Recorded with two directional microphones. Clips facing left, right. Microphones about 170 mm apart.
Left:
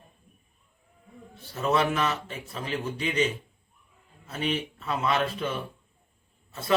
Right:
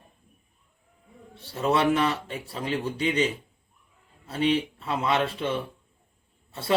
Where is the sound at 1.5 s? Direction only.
30° right (ahead or behind).